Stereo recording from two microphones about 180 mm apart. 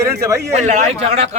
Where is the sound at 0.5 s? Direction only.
35° right (ahead or behind).